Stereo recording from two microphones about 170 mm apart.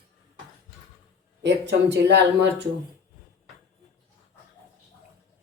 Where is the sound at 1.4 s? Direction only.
90° right.